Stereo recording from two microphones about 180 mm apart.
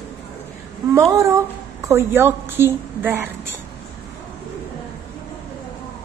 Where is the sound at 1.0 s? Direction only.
15° right (ahead or behind).